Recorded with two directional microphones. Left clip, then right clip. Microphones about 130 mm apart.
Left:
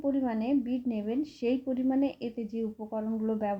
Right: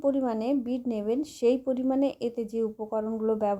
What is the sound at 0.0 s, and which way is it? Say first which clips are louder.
A woman's voice: right 4 dB; 35° right (ahead or behind).